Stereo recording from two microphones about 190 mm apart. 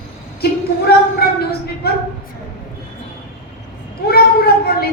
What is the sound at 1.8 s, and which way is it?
Speech, 55° left (ahead or behind).